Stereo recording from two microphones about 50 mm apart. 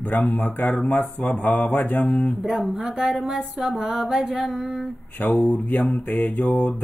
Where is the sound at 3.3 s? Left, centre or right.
Centre.